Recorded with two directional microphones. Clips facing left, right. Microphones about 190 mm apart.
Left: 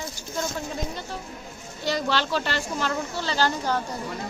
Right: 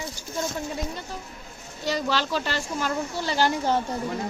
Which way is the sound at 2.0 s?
5° right (ahead or behind).